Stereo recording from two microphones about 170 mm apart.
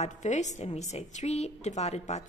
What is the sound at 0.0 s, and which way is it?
A woman's voice, 45° left (ahead or behind).